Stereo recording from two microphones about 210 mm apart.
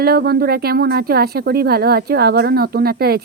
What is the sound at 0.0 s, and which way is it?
Speech, 50° right (ahead or behind).